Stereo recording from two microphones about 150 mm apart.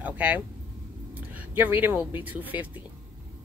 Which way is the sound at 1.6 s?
10° right (ahead or behind).